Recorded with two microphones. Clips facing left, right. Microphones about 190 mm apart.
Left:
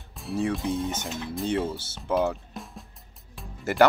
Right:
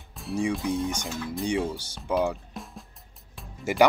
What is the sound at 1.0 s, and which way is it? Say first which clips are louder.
Speech: right 1 dB; 20° left (ahead or behind).